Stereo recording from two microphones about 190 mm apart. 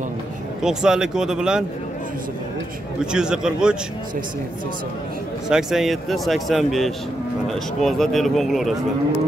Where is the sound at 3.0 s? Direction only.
5° right (ahead or behind).